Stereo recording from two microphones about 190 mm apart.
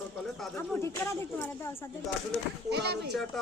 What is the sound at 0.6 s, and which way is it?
Speech, 15° left (ahead or behind).